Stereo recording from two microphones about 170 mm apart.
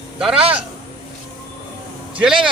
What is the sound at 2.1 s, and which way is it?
Speech, 5° right (ahead or behind).